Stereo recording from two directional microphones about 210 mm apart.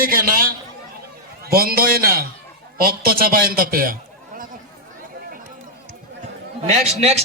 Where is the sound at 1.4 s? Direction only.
45° right (ahead or behind).